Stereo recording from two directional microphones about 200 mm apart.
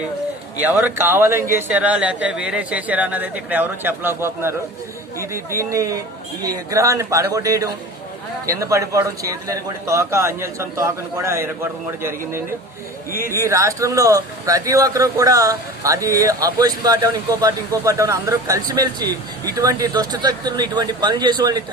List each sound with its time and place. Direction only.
0.8 s speech: 10° right (ahead or behind)